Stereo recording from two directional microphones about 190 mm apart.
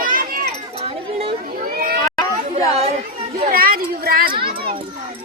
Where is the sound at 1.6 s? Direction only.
50° right (ahead or behind).